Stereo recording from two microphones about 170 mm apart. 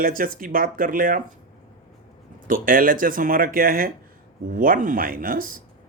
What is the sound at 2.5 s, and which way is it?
Speech, 55° right (ahead or behind).